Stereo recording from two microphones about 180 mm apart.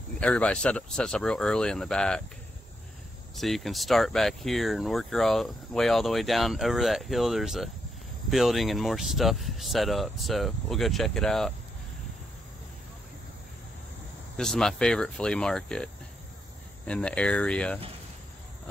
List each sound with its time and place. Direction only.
0.2 s speech: 5° left (ahead or behind)
3.3 s speech: centre (ahead or behind)
14.3 s speech: 5° left (ahead or behind)